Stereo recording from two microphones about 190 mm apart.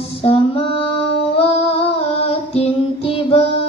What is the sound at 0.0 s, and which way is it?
Female singing, 30° left (ahead or behind).